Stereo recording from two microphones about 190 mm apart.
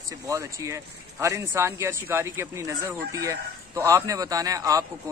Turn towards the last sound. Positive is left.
turn(degrees=-20)  # may be behind; listen again after turning